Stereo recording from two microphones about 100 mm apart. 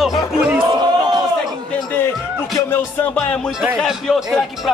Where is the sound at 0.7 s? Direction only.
45° right (ahead or behind).